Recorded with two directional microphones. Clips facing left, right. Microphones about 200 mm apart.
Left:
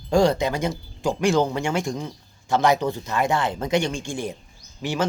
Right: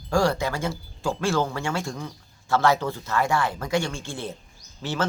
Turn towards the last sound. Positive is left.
turn(degrees=15)  # may be behind; listen again after turning